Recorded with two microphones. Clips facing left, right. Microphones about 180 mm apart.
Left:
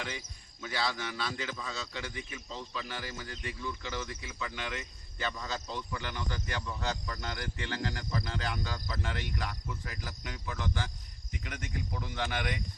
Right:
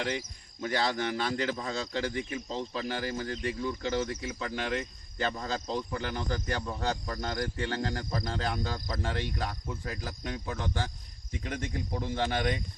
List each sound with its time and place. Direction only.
0.6 s speech: 40° right (ahead or behind)